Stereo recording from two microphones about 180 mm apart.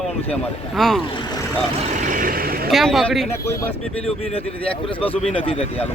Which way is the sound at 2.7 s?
Centre (ahead or behind).